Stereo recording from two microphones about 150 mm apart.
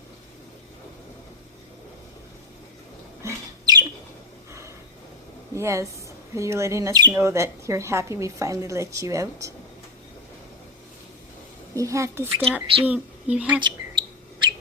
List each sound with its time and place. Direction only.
3.2 s bird: 25° right (ahead or behind)
5.5 s speech: 20° right (ahead or behind)
11.7 s speech: 20° right (ahead or behind)
13.6 s bird: 30° right (ahead or behind)